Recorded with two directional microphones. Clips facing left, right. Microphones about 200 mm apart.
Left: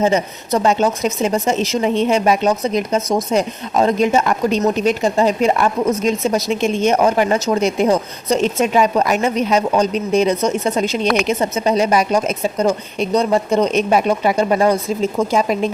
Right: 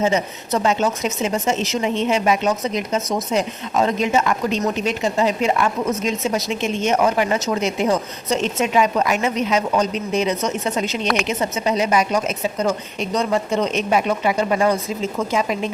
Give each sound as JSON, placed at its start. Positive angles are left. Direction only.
{"t": 0.0, "sound": "a woman's voice", "side_deg": 35}